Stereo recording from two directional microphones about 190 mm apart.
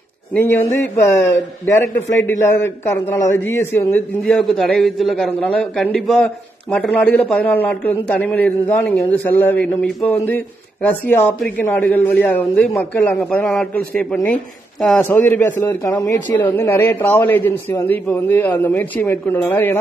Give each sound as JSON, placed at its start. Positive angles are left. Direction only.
{"t": 0.3, "sound": "a man's voice", "side_deg": 10}